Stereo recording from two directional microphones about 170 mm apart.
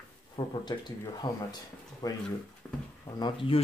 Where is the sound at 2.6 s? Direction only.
5° left (ahead or behind).